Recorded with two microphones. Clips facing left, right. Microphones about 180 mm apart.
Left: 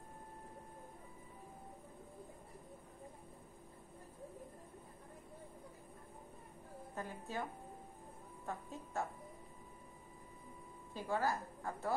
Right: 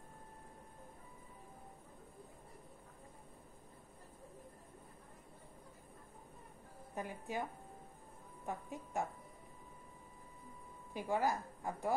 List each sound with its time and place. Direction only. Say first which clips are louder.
7.0 s a woman's voice: right 2 dB; 15° right (ahead or behind)
8.5 s a woman's voice: right 2 dB; 15° right (ahead or behind)
10.9 s a woman's voice: right 2 dB; 15° right (ahead or behind)